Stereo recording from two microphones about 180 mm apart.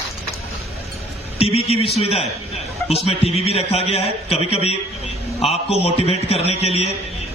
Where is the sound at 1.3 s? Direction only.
35° left (ahead or behind).